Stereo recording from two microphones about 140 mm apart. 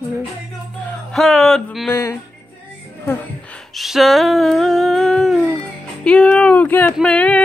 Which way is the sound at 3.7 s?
Centre (ahead or behind).